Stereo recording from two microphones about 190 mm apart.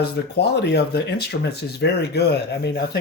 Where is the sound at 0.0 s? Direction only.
60° left (ahead or behind).